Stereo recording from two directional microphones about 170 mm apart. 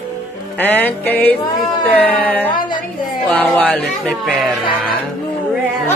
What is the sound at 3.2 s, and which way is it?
Speech, 5° left (ahead or behind).